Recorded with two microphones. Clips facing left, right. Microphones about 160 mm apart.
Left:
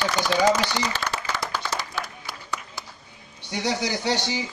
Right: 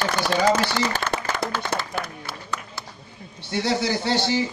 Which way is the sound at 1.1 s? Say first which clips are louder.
Right 3 dB; 55° right (ahead or behind).